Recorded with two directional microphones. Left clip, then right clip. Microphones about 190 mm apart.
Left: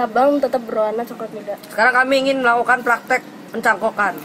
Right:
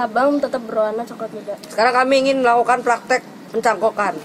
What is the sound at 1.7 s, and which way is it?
A man's voice, 30° right (ahead or behind).